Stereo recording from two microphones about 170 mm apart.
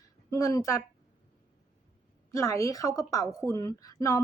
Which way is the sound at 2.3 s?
15° left (ahead or behind).